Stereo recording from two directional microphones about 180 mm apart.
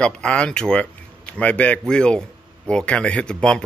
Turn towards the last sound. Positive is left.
turn(degrees=5)  # may be behind; listen again after turning